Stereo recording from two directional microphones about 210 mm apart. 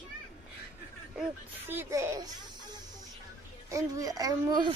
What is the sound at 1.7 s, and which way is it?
A child's voice, 10° right (ahead or behind).